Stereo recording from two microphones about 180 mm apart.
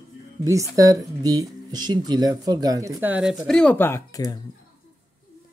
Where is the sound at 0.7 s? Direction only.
20° right (ahead or behind); by 4.3 s 20° left (ahead or behind).